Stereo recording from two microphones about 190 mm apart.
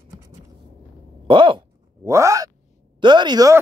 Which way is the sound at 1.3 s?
25° right (ahead or behind).